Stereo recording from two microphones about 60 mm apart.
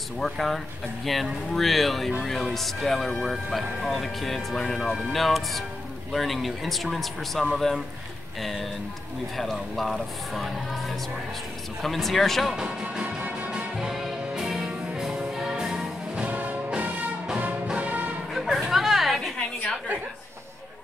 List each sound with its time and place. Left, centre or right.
0.2 s speech: centre
13.0 s music: right
13.7 s music: centre
16.2 s music: right
18.3 s chatter: centre